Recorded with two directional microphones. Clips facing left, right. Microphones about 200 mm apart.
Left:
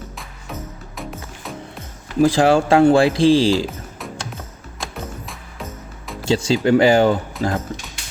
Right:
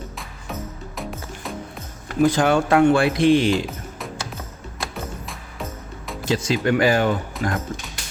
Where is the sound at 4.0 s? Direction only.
Centre (ahead or behind).